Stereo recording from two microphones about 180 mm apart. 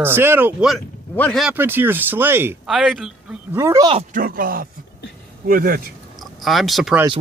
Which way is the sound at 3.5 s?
15° right (ahead or behind).